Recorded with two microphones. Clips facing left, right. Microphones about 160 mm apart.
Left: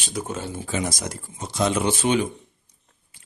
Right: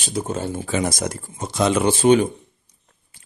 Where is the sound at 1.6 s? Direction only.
70° right (ahead or behind).